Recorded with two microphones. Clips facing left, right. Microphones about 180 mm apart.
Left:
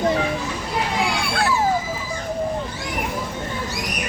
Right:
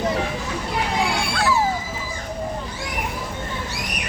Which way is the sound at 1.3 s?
55° left (ahead or behind).